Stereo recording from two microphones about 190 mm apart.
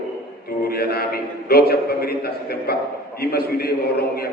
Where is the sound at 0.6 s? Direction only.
55° left (ahead or behind).